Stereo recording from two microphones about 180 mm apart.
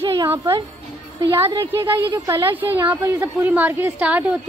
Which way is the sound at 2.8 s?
10° right (ahead or behind).